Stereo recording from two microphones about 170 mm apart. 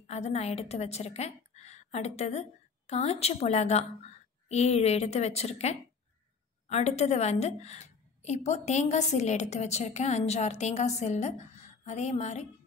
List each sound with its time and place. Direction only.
0.0 s a woman's voice: 40° left (ahead or behind)